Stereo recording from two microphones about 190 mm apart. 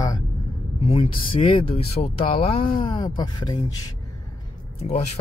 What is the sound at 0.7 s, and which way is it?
Speech, 30° left (ahead or behind).